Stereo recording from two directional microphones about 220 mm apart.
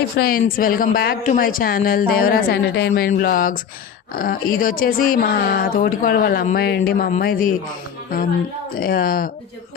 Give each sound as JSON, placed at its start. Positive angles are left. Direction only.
{"t": 0.2, "sound": "speech", "side_deg": 40}
{"t": 8.7, "sound": "speech", "side_deg": 40}